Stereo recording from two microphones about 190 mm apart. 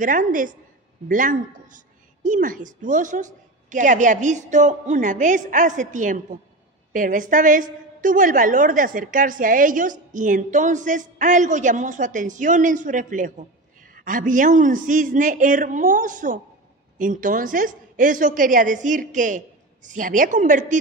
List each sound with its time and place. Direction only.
0.0 s a woman's voice: 45° right (ahead or behind)